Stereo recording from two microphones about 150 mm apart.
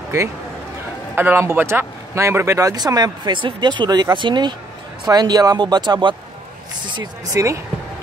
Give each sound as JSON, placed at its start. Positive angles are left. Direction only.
{"t": 1.1, "sound": "speech", "side_deg": -15}
{"t": 7.0, "sound": "speech", "side_deg": -20}